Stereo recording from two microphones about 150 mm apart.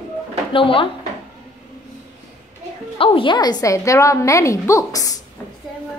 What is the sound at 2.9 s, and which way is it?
A woman's voice, 35° left (ahead or behind).